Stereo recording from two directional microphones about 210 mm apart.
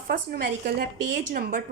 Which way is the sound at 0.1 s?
45° right (ahead or behind).